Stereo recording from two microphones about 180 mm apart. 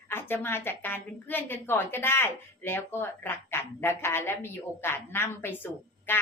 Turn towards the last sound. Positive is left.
turn(degrees=10)  # may be behind; listen again after turning